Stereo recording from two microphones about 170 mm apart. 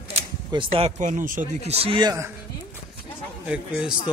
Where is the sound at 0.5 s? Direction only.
30° right (ahead or behind); by 1.7 s 50° right (ahead or behind).